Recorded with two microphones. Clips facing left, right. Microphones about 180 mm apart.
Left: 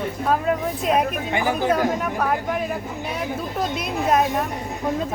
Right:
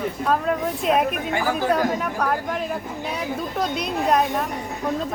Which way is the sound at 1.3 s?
20° left (ahead or behind).